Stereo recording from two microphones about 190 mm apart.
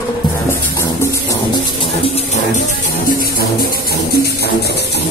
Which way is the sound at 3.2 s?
55° left (ahead or behind).